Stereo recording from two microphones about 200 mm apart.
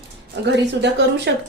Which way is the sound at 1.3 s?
60° right (ahead or behind).